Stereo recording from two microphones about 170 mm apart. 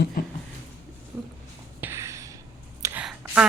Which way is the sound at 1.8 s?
15° right (ahead or behind).